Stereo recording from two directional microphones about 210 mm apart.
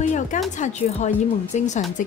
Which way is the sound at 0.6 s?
35° left (ahead or behind).